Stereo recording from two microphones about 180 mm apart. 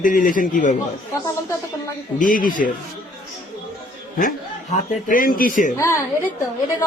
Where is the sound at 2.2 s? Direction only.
50° left (ahead or behind).